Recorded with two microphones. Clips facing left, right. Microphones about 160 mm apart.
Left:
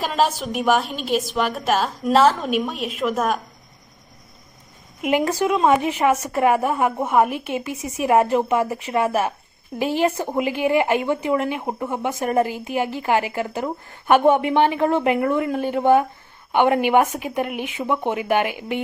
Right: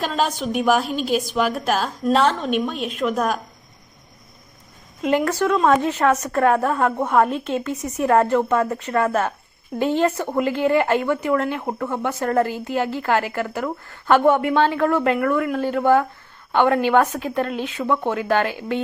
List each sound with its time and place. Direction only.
0.0 s a woman's voice: 5° left (ahead or behind)
5.0 s speech: 15° left (ahead or behind)